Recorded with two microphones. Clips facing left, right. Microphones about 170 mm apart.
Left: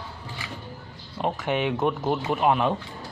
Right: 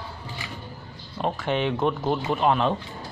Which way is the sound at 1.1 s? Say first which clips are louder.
Even; 15° left (ahead or behind).